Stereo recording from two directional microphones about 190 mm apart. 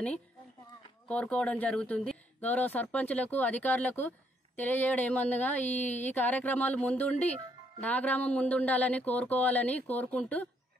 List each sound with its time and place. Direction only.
1.0 s speech: 5° left (ahead or behind)